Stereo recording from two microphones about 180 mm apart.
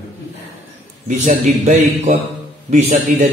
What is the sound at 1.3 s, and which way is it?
A man's voice, 40° right (ahead or behind).